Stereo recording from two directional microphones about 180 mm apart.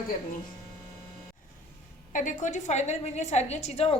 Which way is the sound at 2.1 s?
45° left (ahead or behind).